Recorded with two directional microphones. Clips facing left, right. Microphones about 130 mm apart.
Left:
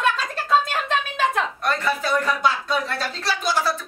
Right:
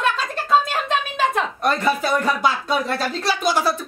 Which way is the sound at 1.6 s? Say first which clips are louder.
Right 4 dB; 15° right (ahead or behind).